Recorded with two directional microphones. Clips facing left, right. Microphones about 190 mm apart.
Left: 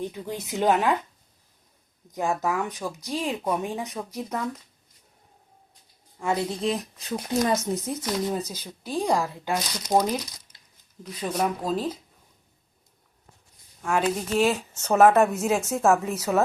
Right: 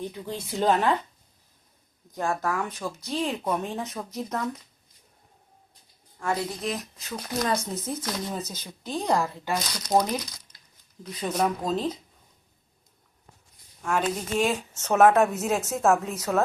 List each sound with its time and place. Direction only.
0.0 s speech: 15° left (ahead or behind)
2.1 s speech: 15° left (ahead or behind)
3.1 s speech: centre (ahead or behind)
3.6 s speech: 15° left (ahead or behind)
4.2 s speech: 5° left (ahead or behind)
6.2 s speech: 25° left (ahead or behind)
7.3 s speech: 20° left (ahead or behind)
10.5 s a sound: 10° left (ahead or behind)
11.0 s speech: 5° left (ahead or behind)
13.8 s speech: centre (ahead or behind)